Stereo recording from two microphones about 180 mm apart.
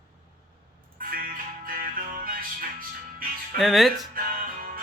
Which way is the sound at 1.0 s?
50° right (ahead or behind).